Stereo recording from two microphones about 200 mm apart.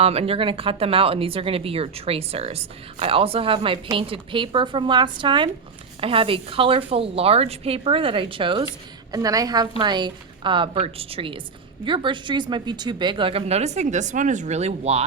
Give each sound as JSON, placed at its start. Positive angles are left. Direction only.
{"t": 0.0, "sound": "speech", "side_deg": -30}